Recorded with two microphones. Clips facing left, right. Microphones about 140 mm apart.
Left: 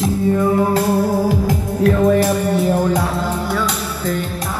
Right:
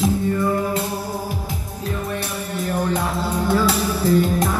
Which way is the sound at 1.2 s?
90° left.